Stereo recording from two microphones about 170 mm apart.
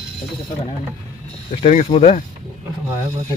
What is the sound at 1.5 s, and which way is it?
Speech, 35° left (ahead or behind).